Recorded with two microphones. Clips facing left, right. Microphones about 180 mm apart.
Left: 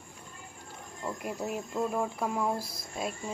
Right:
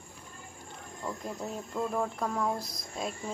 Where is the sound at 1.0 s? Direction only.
15° left (ahead or behind).